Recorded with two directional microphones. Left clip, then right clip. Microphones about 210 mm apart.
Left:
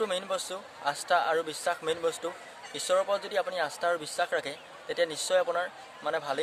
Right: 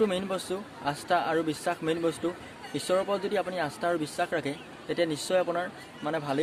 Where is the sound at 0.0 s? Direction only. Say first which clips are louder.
Right 2 dB; 10° left (ahead or behind).